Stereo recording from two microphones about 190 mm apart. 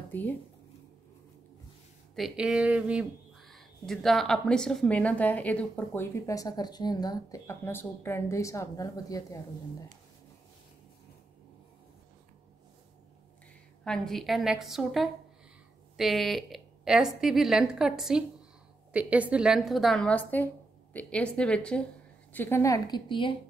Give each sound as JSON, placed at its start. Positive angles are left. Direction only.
{"t": 0.1, "sound": "speech", "side_deg": 10}
{"t": 2.1, "sound": "speech", "side_deg": -5}
{"t": 13.8, "sound": "a woman's voice", "side_deg": 5}